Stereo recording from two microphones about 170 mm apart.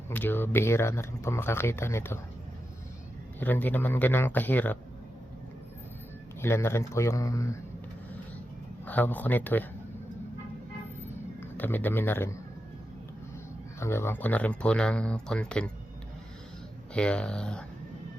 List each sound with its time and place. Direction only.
0.1 s speech: 10° left (ahead or behind)
3.4 s speech: 10° left (ahead or behind)
6.4 s speech: 15° left (ahead or behind)
8.8 s speech: 10° left (ahead or behind)
11.3 s a man's voice: 10° left (ahead or behind)
13.7 s speech: 15° left (ahead or behind)
16.9 s speech: 5° left (ahead or behind)